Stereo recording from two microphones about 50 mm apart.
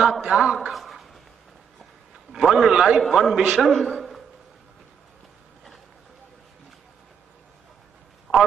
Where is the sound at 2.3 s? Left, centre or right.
Centre.